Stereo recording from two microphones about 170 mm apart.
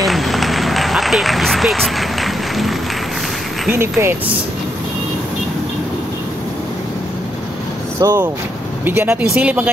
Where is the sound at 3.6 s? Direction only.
15° right (ahead or behind).